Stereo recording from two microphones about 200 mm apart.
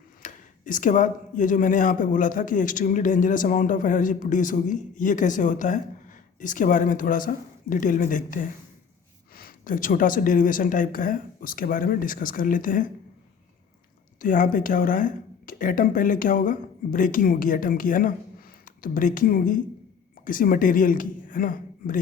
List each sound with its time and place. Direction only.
0.2 s speech: 40° left (ahead or behind)
14.2 s a woman's voice: 40° left (ahead or behind)